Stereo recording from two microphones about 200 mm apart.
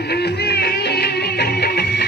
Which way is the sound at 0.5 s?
50° left (ahead or behind).